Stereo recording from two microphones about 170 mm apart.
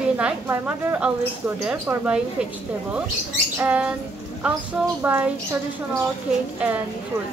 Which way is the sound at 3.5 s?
10° right (ahead or behind).